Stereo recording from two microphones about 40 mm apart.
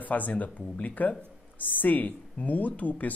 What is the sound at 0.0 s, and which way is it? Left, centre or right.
Speech, left.